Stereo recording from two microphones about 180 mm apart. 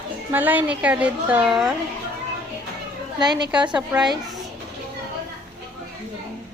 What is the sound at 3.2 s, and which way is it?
Speech, 25° right (ahead or behind).